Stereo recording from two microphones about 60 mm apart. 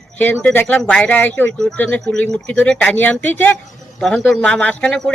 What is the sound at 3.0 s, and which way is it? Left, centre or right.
Speech, left.